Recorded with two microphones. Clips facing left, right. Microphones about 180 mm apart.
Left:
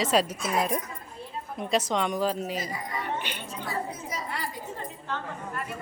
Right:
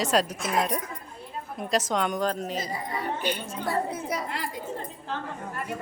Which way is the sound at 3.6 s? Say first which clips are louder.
Right 6 dB; 60° right (ahead or behind).